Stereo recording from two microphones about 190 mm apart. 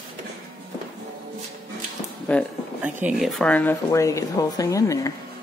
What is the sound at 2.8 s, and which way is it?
Speech, 5° right (ahead or behind).